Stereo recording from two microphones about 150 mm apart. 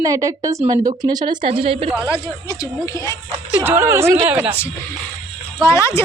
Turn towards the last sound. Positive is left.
turn(degrees=20)  # may be behind; listen again after turning